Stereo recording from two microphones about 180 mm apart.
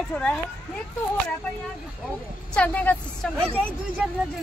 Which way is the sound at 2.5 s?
10° left (ahead or behind).